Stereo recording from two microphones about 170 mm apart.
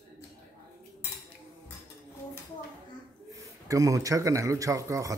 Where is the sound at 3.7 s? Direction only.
20° right (ahead or behind).